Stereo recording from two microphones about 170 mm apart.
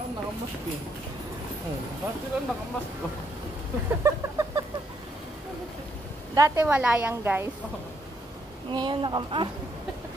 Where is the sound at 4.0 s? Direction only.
15° right (ahead or behind).